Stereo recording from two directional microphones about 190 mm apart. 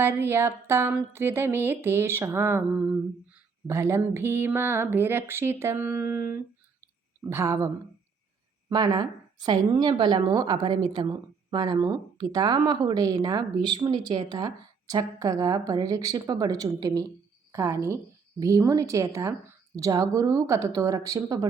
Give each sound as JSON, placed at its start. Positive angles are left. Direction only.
{"t": 0.0, "sound": "speech", "side_deg": -10}
{"t": 7.3, "sound": "speech", "side_deg": -15}
{"t": 8.7, "sound": "speech", "side_deg": -20}